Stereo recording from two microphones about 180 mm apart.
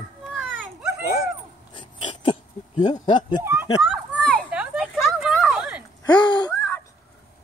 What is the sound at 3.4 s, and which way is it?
Speech, 15° right (ahead or behind).